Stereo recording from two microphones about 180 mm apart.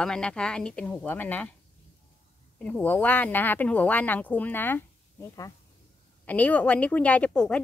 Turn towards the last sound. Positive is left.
turn(degrees=5)  # may be behind; listen again after turning